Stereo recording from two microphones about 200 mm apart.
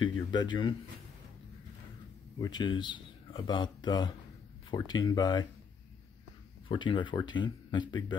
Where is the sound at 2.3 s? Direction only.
20° left (ahead or behind).